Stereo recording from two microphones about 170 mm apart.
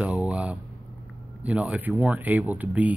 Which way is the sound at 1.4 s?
10° right (ahead or behind).